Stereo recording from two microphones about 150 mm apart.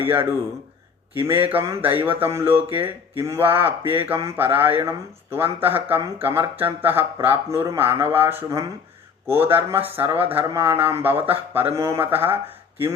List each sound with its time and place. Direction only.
0.0 s speech: 15° right (ahead or behind)
1.3 s speech: 15° right (ahead or behind)